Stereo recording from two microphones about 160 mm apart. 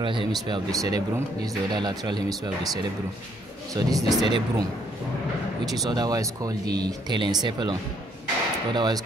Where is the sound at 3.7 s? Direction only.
25° right (ahead or behind).